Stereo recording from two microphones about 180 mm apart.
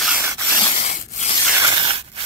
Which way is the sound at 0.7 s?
40° left (ahead or behind).